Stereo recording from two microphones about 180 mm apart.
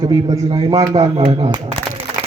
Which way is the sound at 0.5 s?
20° right (ahead or behind).